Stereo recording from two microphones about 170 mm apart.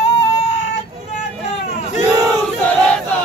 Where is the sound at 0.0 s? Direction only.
40° left (ahead or behind).